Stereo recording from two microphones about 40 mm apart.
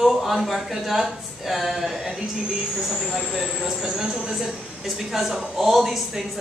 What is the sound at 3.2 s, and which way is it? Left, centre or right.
Speech, centre.